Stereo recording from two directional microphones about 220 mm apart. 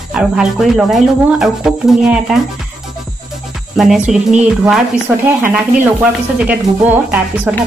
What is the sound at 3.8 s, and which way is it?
Speech, centre (ahead or behind).